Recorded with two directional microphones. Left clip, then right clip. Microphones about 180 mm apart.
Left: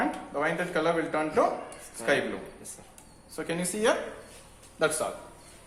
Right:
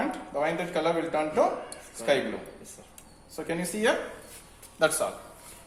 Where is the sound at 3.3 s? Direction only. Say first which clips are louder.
Even; 40° left (ahead or behind).